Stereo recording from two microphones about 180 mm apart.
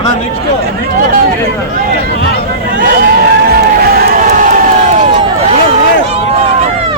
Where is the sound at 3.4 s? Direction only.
60° right (ahead or behind); by 5.2 s 40° right (ahead or behind).